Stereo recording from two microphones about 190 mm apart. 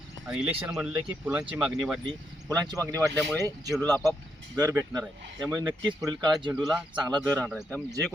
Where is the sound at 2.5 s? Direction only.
20° right (ahead or behind).